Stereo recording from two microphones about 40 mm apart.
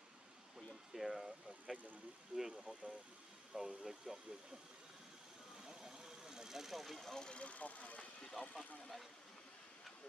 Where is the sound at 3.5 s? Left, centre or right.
Right.